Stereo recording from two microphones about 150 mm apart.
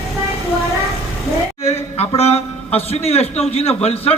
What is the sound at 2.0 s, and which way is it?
A man's voice, 45° left (ahead or behind).